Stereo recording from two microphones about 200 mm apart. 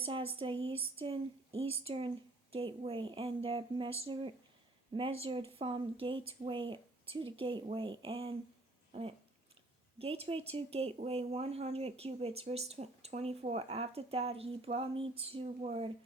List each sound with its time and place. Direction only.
0.0 s speech: 30° right (ahead or behind)
8.9 s a sound: 30° right (ahead or behind)
10.0 s speech: 30° right (ahead or behind)